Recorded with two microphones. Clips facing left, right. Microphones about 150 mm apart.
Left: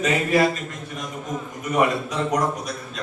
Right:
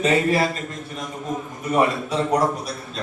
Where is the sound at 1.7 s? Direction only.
30° right (ahead or behind).